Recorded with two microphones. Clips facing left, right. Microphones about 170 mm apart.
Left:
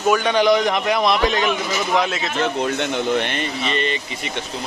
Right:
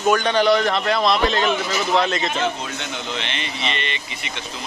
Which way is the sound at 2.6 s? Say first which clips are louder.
Left 9 dB; 60° left (ahead or behind).